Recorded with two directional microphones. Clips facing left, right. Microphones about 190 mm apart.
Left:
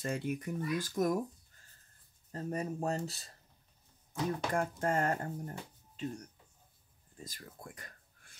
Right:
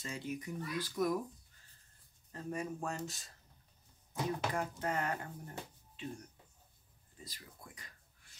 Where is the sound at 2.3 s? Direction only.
40° left (ahead or behind).